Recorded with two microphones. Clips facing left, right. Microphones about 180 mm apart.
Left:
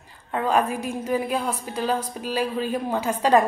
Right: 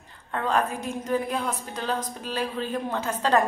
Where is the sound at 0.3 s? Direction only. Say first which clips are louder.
Left 3 dB; 10° left (ahead or behind).